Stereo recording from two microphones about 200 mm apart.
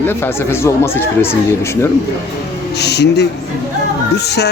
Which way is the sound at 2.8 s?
55° left (ahead or behind).